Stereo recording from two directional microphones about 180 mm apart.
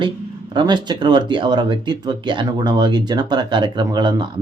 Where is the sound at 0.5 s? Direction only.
25° right (ahead or behind).